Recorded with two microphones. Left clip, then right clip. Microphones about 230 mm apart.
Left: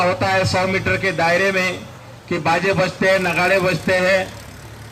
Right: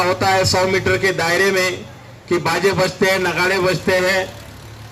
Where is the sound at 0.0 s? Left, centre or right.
Right.